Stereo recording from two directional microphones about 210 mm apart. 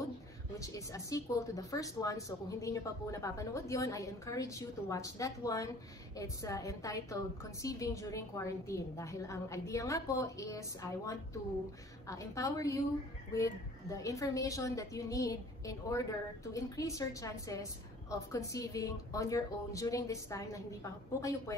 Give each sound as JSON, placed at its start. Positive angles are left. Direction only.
{"t": 0.6, "sound": "speech", "side_deg": 15}